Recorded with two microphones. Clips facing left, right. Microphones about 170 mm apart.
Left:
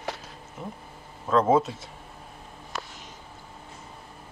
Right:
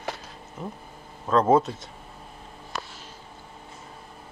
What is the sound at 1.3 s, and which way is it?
Speech, 5° left (ahead or behind).